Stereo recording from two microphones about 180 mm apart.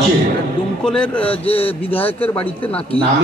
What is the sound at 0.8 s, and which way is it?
Speech, 5° left (ahead or behind).